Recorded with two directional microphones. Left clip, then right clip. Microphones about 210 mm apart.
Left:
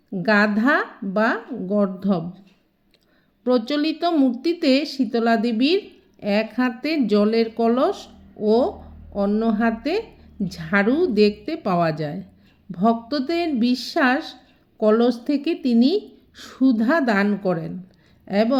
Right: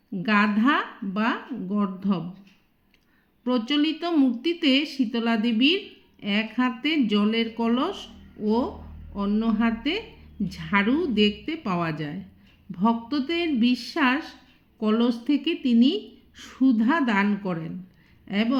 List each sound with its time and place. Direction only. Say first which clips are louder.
0.2 s a woman's voice: left 4 dB; 25° left (ahead or behind)
3.7 s a woman's voice: left 3 dB; 25° left (ahead or behind)